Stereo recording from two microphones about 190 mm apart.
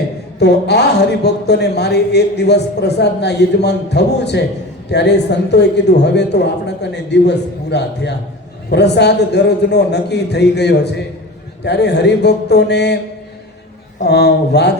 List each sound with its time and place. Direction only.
0.3 s speech: 60° left (ahead or behind)
14.0 s speech: 60° left (ahead or behind)